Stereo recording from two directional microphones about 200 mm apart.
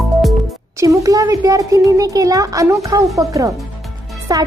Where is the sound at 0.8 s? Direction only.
15° right (ahead or behind).